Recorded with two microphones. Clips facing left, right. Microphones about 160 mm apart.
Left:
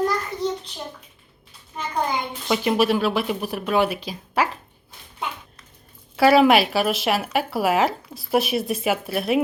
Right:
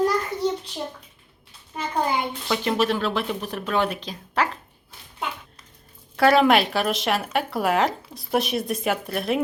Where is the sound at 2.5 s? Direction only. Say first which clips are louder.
Left 3 dB; 10° left (ahead or behind).